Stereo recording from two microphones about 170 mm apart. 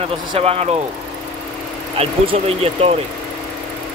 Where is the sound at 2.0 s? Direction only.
35° right (ahead or behind).